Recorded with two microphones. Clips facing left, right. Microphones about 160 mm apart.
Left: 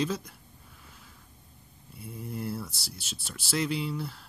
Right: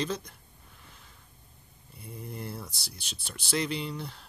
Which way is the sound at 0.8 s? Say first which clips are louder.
Left 1 dB; 5° left (ahead or behind).